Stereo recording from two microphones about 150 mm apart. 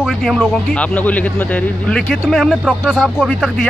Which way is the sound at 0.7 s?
10° left (ahead or behind).